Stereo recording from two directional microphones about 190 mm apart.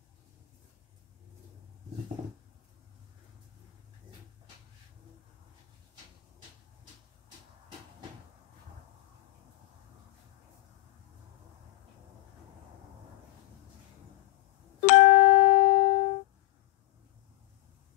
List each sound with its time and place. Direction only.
14.8 s music: 40° left (ahead or behind)